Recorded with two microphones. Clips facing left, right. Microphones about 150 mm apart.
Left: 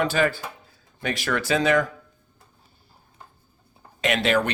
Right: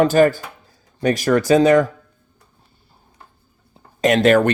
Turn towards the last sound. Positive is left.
turn(degrees=-50)  # may be behind; listen again after turning